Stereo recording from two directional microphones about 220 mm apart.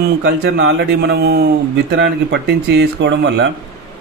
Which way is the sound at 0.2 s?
55° right (ahead or behind).